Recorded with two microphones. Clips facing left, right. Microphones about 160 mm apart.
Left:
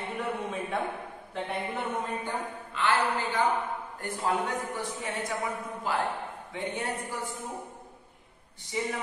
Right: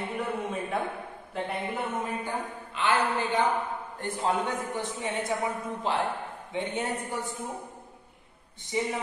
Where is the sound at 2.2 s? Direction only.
20° right (ahead or behind).